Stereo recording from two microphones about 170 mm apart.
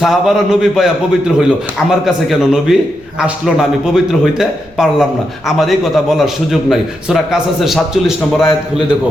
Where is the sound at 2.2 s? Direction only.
Centre (ahead or behind).